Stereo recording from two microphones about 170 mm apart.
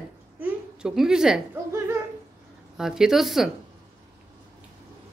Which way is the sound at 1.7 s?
15° right (ahead or behind).